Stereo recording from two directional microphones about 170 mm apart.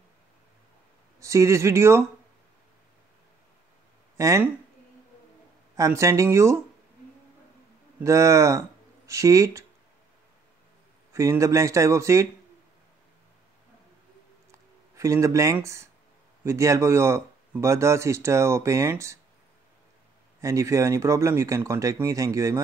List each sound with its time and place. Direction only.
1.2 s speech: 15° right (ahead or behind)
4.2 s speech: 15° right (ahead or behind)
5.8 s speech: 15° right (ahead or behind)
8.0 s speech: 20° right (ahead or behind)
11.1 s speech: 20° right (ahead or behind)
14.5 s a sound: 20° right (ahead or behind)
16.4 s speech: 15° right (ahead or behind)
20.3 s speech: 15° right (ahead or behind)